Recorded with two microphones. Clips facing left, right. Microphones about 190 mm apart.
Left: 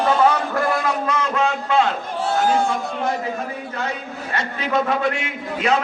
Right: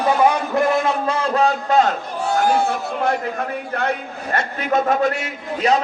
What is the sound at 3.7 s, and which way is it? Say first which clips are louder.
A man's voice: right 4 dB; 60° right (ahead or behind).